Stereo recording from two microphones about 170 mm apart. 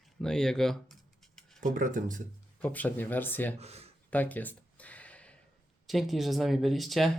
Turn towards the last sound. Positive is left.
turn(degrees=0)  # may be behind; listen again after turning